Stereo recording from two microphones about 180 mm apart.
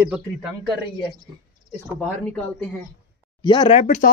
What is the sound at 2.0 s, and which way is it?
Speech, 5° left (ahead or behind).